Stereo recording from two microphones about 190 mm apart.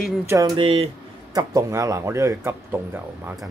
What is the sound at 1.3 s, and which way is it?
Speech, 15° right (ahead or behind).